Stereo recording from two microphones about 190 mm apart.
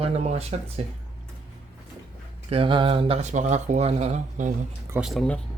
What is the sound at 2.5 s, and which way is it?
Speech, 30° right (ahead or behind).